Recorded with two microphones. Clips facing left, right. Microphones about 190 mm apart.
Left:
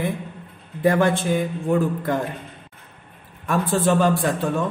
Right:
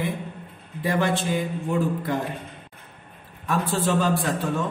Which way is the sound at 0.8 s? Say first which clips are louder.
Left 5 dB; 50° left (ahead or behind).